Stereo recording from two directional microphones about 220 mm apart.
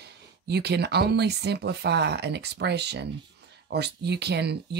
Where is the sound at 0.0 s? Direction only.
50° right (ahead or behind).